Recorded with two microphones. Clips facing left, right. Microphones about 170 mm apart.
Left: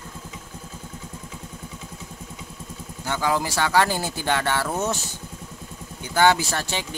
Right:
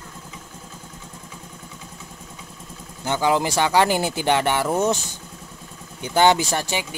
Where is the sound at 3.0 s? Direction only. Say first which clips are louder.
Right 4 dB; 20° right (ahead or behind).